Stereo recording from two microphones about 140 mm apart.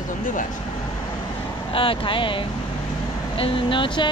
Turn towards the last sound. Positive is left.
turn(degrees=35)  # may be behind; listen again after turning